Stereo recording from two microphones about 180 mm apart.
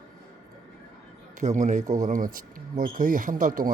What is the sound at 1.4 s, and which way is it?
Speech, 45° right (ahead or behind).